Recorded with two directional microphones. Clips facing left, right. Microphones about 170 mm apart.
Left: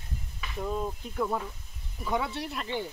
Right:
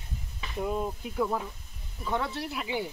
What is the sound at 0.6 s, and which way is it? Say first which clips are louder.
Speech: right 2 dB; 10° right (ahead or behind).